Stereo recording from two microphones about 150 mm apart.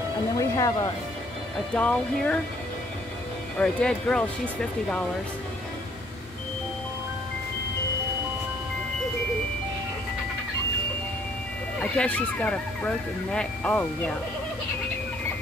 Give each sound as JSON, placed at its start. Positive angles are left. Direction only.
{"t": 0.4, "sound": "speech", "side_deg": 25}
{"t": 1.7, "sound": "speech", "side_deg": 10}
{"t": 3.5, "sound": "speech", "side_deg": 5}
{"t": 11.8, "sound": "speech", "side_deg": 10}